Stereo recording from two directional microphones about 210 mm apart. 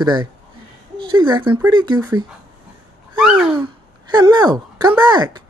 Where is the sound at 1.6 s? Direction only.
20° right (ahead or behind).